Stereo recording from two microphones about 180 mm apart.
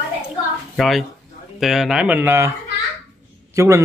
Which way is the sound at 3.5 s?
15° right (ahead or behind).